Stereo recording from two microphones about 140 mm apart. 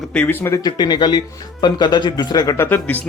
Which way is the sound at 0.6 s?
30° left (ahead or behind).